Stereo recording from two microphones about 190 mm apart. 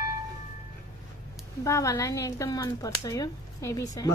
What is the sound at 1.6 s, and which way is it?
Speech, 15° left (ahead or behind).